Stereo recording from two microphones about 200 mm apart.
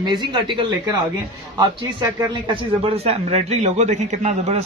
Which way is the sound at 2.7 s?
30° right (ahead or behind).